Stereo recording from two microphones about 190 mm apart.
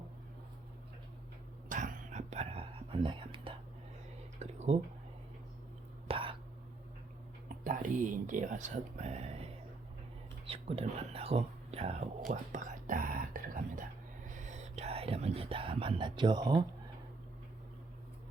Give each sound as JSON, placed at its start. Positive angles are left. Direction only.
{"t": 1.7, "sound": "whispering", "side_deg": -40}
{"t": 4.4, "sound": "a sound", "side_deg": -35}
{"t": 6.1, "sound": "whispering", "side_deg": -30}
{"t": 7.4, "sound": "a sound", "side_deg": -45}
{"t": 10.4, "sound": "speech", "side_deg": -30}
{"t": 12.3, "sound": "whispering", "side_deg": -40}